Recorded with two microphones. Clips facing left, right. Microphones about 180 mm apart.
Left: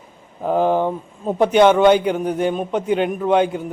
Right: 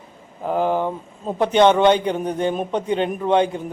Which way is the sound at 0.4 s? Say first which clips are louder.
Left 3 dB; 15° left (ahead or behind).